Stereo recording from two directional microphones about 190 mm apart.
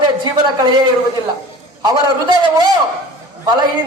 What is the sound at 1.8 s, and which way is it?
Speech, 20° right (ahead or behind).